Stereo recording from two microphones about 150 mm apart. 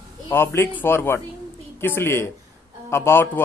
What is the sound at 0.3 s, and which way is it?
A man's voice, 15° left (ahead or behind).